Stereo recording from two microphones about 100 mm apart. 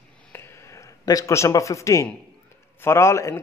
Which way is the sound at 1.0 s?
35° left (ahead or behind).